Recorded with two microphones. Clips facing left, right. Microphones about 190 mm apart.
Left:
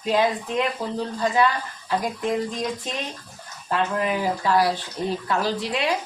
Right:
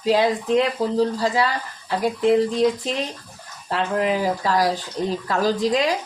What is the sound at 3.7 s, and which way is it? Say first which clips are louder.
Speech: right 2 dB; 30° right (ahead or behind).